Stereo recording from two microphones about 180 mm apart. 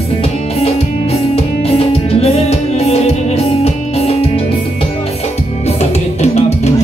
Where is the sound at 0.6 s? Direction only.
35° left (ahead or behind).